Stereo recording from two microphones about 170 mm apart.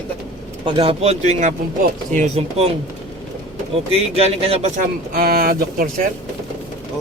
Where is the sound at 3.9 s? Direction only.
35° right (ahead or behind); by 5.9 s 60° right (ahead or behind).